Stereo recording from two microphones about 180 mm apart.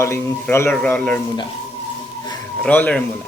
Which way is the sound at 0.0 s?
15° left (ahead or behind).